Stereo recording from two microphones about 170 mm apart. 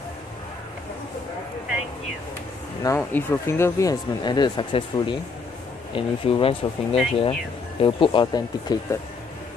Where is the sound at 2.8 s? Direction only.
15° left (ahead or behind); by 6.7 s 35° left (ahead or behind).